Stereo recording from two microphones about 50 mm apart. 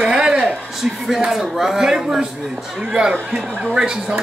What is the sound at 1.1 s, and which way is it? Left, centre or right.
A man's voice, centre.